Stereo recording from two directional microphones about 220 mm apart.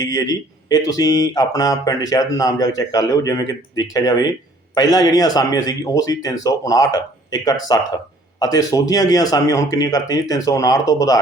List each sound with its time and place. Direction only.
0.0 s speech: 15° left (ahead or behind)